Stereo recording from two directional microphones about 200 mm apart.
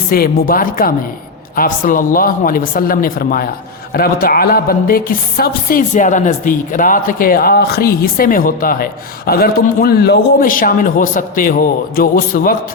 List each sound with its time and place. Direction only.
0.1 s a woman's voice: 45° left (ahead or behind)